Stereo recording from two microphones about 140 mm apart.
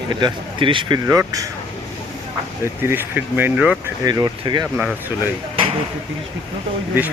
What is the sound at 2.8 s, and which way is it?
Speech, 15° right (ahead or behind).